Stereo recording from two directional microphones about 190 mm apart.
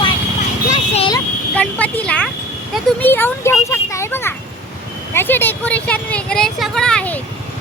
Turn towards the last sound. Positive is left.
turn(degrees=5)  # may be behind; listen again after turning